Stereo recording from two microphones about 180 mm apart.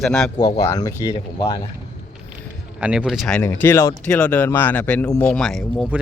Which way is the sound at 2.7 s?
5° right (ahead or behind).